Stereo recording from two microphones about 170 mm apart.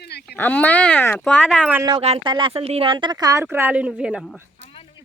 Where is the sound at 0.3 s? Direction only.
10° left (ahead or behind).